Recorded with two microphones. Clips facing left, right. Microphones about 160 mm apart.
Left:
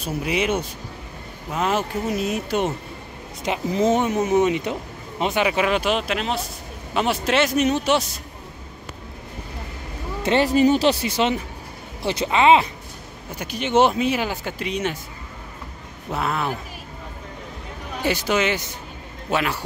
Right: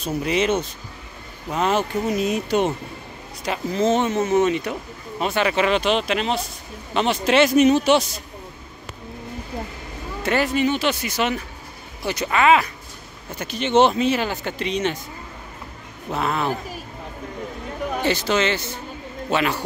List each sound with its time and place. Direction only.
0.0 s speech: 10° left (ahead or behind)
3.4 s speech: 15° left (ahead or behind); by 8.0 s centre (ahead or behind)
10.2 s speech: 30° left (ahead or behind)
13.4 s speech: 10° left (ahead or behind)
16.1 s speech: 5° left (ahead or behind)
18.0 s speech: 10° left (ahead or behind)